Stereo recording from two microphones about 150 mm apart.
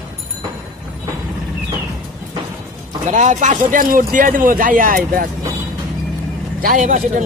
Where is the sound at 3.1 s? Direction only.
55° right (ahead or behind).